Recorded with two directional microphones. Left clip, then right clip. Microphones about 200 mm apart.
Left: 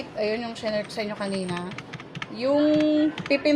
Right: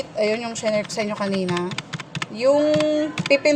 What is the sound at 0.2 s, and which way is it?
Speech, 30° right (ahead or behind).